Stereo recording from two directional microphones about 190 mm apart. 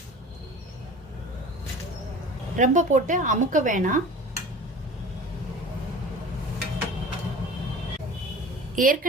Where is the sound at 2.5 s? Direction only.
40° right (ahead or behind).